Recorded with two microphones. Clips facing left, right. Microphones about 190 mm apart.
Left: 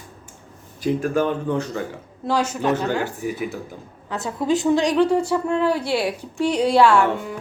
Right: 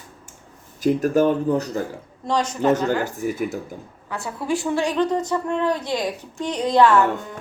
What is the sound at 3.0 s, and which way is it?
Speech, 45° right (ahead or behind).